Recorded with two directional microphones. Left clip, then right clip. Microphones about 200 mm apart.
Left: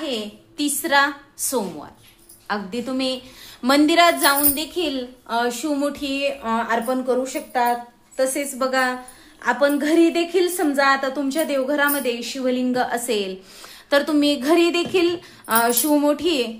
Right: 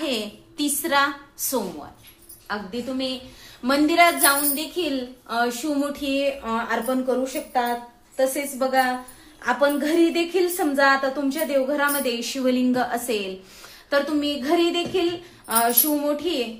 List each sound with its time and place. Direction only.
0.6 s a woman's voice: 15° left (ahead or behind)
2.4 s a woman's voice: 40° left (ahead or behind); by 13.3 s 20° left (ahead or behind)
13.8 s speech: 40° left (ahead or behind)